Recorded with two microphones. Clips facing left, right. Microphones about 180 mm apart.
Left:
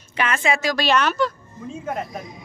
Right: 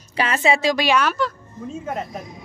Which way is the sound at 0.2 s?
30° right (ahead or behind).